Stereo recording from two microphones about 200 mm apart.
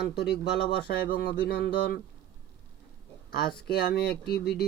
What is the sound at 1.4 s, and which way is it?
Speech, 55° left (ahead or behind).